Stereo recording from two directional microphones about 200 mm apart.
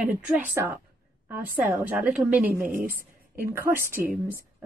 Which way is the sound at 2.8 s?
45° right (ahead or behind).